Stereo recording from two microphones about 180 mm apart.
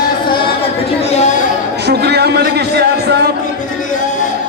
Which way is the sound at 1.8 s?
65° right (ahead or behind).